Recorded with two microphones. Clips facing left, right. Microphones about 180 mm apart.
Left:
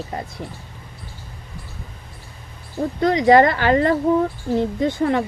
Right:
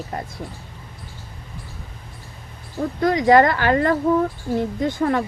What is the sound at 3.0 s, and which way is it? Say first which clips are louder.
Speech: left 1 dB; 20° left (ahead or behind).